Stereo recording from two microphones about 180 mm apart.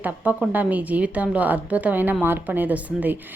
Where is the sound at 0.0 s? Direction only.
10° right (ahead or behind).